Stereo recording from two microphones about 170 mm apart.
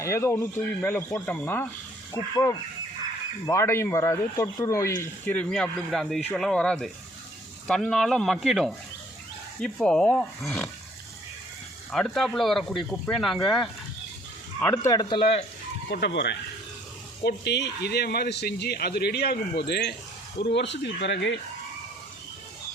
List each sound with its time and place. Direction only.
0.0 s speech: 15° left (ahead or behind)
2.1 s speech: 20° left (ahead or behind); by 10.7 s 5° left (ahead or behind)
11.9 s speech: centre (ahead or behind)
14.8 s speech: 25° left (ahead or behind)
15.9 s speech: 80° left
20.4 s speech: 90° left